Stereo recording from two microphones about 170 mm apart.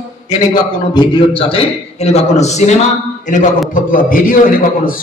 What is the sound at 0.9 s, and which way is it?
A man's voice, 30° left (ahead or behind).